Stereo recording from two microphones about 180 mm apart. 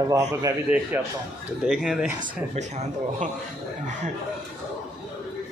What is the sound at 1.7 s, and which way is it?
Speech, 5° right (ahead or behind).